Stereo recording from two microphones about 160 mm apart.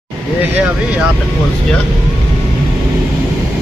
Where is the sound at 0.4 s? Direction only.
10° right (ahead or behind).